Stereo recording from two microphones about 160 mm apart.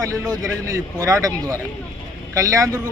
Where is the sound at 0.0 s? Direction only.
20° right (ahead or behind).